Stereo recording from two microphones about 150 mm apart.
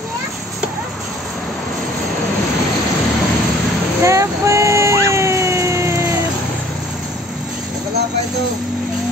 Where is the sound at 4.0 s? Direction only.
20° right (ahead or behind).